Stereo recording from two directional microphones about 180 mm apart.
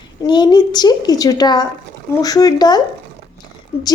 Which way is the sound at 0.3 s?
25° left (ahead or behind).